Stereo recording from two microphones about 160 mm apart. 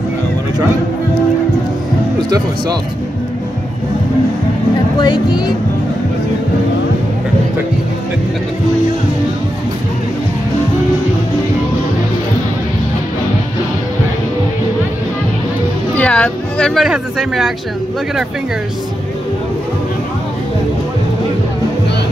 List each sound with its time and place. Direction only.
2.2 s speech: 25° right (ahead or behind)
5.0 s speech: 25° left (ahead or behind)
16.0 s speech: 5° left (ahead or behind)